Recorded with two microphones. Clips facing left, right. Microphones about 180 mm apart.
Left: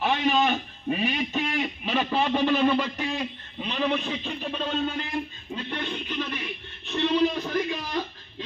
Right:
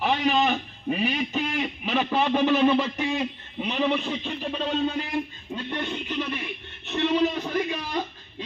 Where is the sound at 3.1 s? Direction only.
10° right (ahead or behind).